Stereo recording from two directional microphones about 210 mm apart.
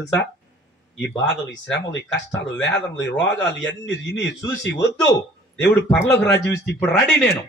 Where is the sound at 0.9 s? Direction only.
55° left (ahead or behind).